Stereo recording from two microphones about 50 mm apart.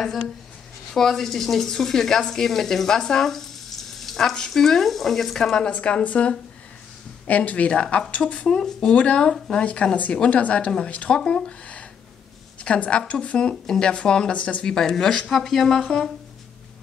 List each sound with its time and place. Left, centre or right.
0.9 s speech: centre
5.8 s speech: left
8.5 s speech: centre
8.7 s speech: left
14.3 s speech: left
14.6 s speech: centre